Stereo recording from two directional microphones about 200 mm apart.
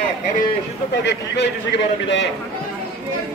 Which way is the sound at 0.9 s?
60° left (ahead or behind).